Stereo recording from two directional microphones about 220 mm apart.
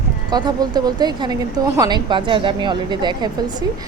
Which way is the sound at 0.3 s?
20° right (ahead or behind).